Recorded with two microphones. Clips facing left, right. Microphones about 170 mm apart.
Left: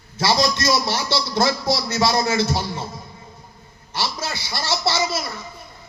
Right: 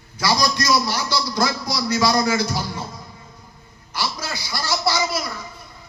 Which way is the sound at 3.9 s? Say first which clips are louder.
Left 1 dB; 25° left (ahead or behind).